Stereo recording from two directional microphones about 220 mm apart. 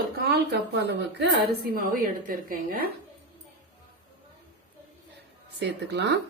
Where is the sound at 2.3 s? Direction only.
40° right (ahead or behind).